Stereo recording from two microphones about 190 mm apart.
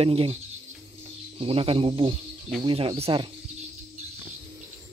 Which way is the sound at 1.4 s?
30° right (ahead or behind).